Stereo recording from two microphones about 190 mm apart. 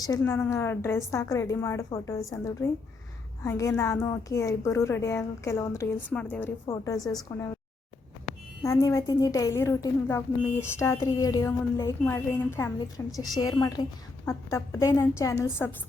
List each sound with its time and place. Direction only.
0.2 s a woman's voice: 10° left (ahead or behind)
7.0 s a woman's voice: centre (ahead or behind)
8.6 s a woman's voice: 15° left (ahead or behind)